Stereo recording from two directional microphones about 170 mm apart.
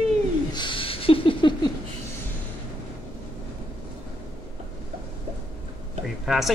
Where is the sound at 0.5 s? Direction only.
30° left (ahead or behind).